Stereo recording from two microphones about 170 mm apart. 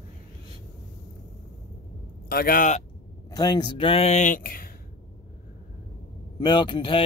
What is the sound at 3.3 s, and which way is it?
Speech, 25° left (ahead or behind).